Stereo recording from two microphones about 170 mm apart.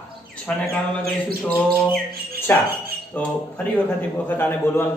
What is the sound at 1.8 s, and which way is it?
Bird, 10° left (ahead or behind).